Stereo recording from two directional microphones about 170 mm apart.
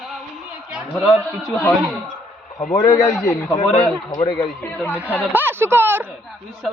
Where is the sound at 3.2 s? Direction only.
20° left (ahead or behind).